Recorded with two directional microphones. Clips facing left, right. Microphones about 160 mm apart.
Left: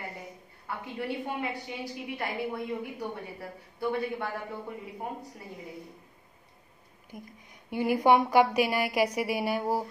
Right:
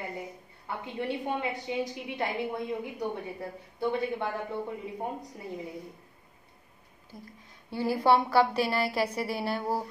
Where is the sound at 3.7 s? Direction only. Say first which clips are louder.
Right 1 dB; 20° right (ahead or behind).